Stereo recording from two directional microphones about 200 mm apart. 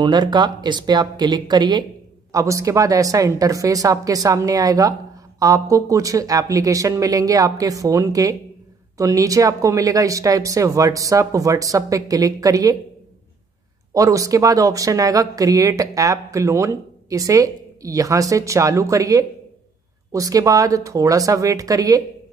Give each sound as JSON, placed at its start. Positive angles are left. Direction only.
{"t": 0.0, "sound": "speech", "side_deg": -20}
{"t": 13.9, "sound": "speech", "side_deg": -15}